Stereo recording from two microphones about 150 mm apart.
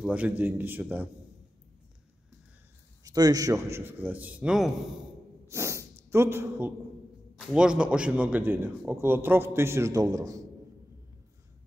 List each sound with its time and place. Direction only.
0.0 s a man's voice: 10° right (ahead or behind)
3.0 s a man's voice: 25° right (ahead or behind)
3.7 s a man's voice: 15° right (ahead or behind)
5.5 s dog: 20° right (ahead or behind)
6.0 s a man's voice: 15° right (ahead or behind)
7.3 s a man's voice: 5° right (ahead or behind); by 10.4 s 20° right (ahead or behind)